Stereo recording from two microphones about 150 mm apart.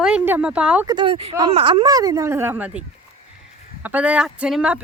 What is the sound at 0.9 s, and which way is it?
Speech, 35° right (ahead or behind).